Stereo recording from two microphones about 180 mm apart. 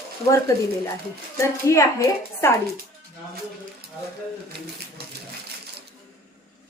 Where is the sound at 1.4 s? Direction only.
15° left (ahead or behind).